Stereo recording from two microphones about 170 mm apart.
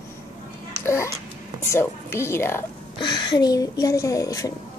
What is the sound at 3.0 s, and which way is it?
Speech, 25° left (ahead or behind).